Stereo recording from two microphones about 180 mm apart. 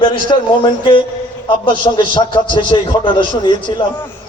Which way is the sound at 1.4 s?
25° left (ahead or behind).